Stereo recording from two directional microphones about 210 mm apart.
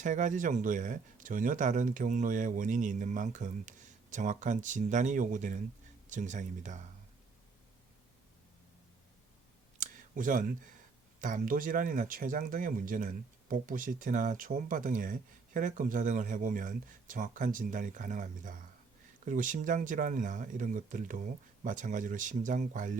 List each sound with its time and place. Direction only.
0.0 s speech: 35° right (ahead or behind)
9.8 s a sound: 40° right (ahead or behind)
11.2 s speech: 40° right (ahead or behind)